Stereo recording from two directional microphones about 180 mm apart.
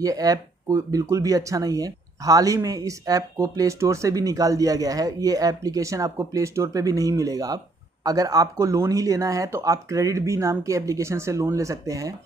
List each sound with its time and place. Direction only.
0.0 s speech: 20° right (ahead or behind)